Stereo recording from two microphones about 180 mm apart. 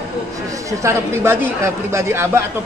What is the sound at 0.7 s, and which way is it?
Speech, 15° right (ahead or behind).